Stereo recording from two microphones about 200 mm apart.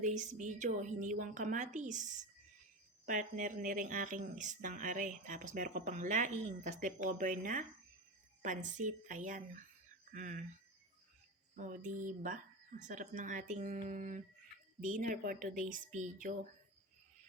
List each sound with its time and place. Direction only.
0.0 s speech: 40° right (ahead or behind)
3.1 s speech: 40° right (ahead or behind)
11.5 s speech: 40° right (ahead or behind)